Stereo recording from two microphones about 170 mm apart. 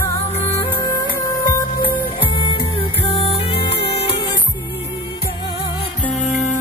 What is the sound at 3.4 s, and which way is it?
Music, 35° left (ahead or behind).